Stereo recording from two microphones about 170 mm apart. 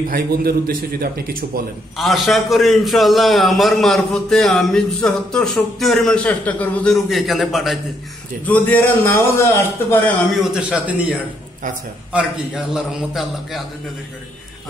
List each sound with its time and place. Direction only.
0.1 s a man's voice: 60° right (ahead or behind)
2.0 s a man's voice: centre (ahead or behind)
10.5 s a man's voice: 10° right (ahead or behind)